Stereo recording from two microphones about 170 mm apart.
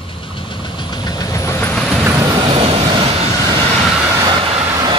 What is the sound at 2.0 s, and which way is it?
Vehicle, 20° right (ahead or behind).